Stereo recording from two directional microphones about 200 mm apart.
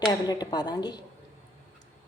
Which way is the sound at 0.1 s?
20° left (ahead or behind).